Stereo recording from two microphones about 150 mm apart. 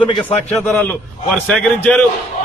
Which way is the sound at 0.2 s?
10° left (ahead or behind).